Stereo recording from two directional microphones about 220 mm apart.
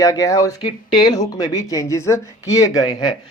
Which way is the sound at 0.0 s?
15° left (ahead or behind).